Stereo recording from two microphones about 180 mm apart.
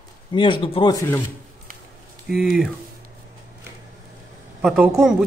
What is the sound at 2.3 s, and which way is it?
Speech, centre (ahead or behind).